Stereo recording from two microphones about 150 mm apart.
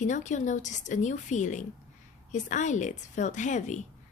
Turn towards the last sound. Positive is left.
turn(degrees=55)  # may be behind; listen again after turning